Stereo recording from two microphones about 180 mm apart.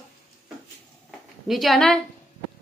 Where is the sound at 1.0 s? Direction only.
Centre (ahead or behind).